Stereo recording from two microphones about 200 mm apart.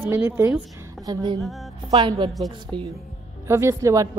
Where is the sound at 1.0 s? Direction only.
20° right (ahead or behind).